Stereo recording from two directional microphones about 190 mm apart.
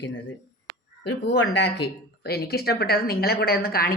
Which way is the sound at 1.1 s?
65° left (ahead or behind).